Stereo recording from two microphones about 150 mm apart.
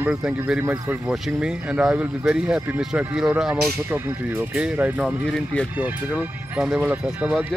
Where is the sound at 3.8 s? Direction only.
15° right (ahead or behind).